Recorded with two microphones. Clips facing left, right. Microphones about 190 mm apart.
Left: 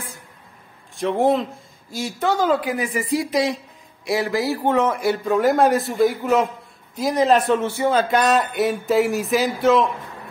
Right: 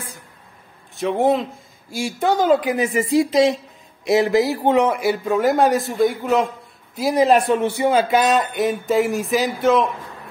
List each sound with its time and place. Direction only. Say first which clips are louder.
0.9 s speech: right 1 dB; centre (ahead or behind); by 4.9 s 15° right (ahead or behind)
5.0 s a man's voice: even; 5° right (ahead or behind)
7.0 s a man's voice: right 2 dB; 10° right (ahead or behind)